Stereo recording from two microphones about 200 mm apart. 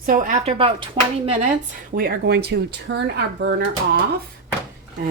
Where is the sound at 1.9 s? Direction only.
50° right (ahead or behind).